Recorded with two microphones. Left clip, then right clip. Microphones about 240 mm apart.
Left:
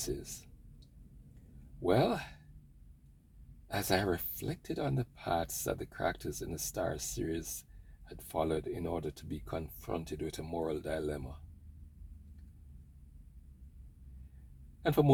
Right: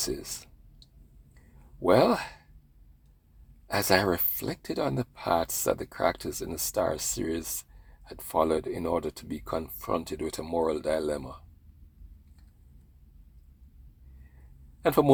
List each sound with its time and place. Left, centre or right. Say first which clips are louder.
0.0 s speech: right 7 dB; right
1.8 s speech: right 8 dB; right
3.7 s speech: right 8 dB; right
14.8 s a man's voice: right 7 dB; right